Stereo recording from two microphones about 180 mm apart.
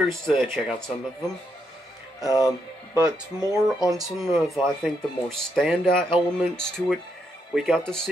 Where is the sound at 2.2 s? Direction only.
20° left (ahead or behind).